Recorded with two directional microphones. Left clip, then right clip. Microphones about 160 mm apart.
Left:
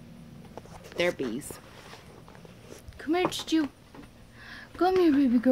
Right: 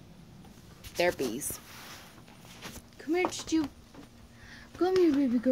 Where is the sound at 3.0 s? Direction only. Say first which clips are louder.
Left 3 dB; 15° left (ahead or behind).